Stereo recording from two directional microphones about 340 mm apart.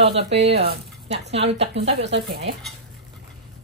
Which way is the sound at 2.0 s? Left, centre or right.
Right.